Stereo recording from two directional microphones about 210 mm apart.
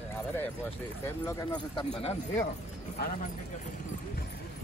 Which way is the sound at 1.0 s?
15° left (ahead or behind).